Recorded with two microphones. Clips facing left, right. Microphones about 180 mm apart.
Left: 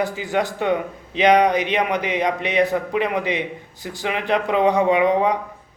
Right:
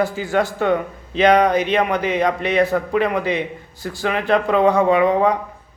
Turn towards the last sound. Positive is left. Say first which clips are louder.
# right 2 dB
turn(degrees=20)  # may be behind; listen again after turning